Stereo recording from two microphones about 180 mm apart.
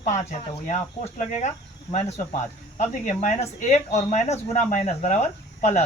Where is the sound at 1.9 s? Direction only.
40° left (ahead or behind).